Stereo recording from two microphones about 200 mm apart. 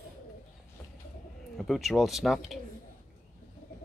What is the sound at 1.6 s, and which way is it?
Speech, centre (ahead or behind).